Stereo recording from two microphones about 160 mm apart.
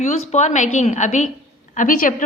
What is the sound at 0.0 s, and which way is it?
A woman's voice, 45° left (ahead or behind).